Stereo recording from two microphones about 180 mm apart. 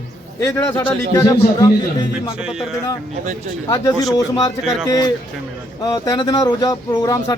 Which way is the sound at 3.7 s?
20° left (ahead or behind).